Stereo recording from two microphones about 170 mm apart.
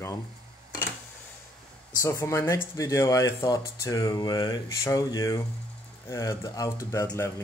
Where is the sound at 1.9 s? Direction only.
15° left (ahead or behind).